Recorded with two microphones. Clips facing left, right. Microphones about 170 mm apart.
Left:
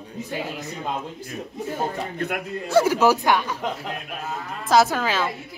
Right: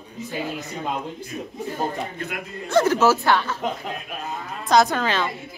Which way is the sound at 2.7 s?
10° left (ahead or behind).